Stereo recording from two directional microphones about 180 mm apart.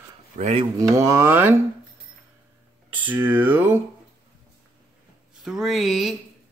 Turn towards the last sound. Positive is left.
turn(degrees=0)  # may be behind; listen again after turning